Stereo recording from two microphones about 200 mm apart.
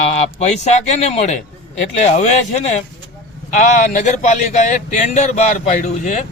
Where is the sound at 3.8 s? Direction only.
35° left (ahead or behind).